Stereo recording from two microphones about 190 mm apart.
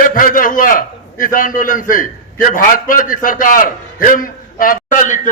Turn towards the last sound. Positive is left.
turn(degrees=40)  # may be behind; listen again after turning